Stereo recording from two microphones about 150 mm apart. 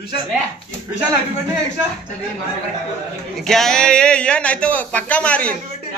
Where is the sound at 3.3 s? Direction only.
Centre (ahead or behind).